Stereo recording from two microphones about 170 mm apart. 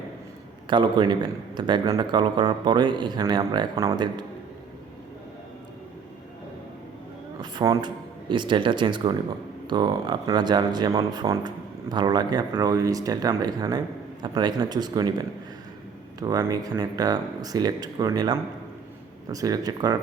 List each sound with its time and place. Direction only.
0.7 s speech: 30° right (ahead or behind)
7.3 s speech: 25° right (ahead or behind)
16.2 s speech: 20° right (ahead or behind)